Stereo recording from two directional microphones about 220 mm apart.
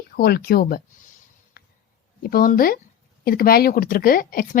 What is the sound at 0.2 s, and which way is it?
Speech, 45° left (ahead or behind).